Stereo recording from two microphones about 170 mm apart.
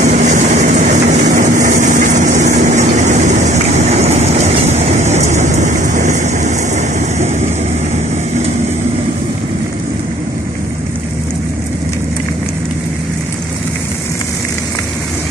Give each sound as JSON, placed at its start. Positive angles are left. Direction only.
{"t": 0.0, "sound": "vehicle", "side_deg": -45}